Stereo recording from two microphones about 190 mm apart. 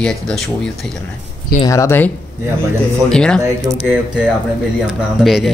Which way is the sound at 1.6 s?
15° left (ahead or behind).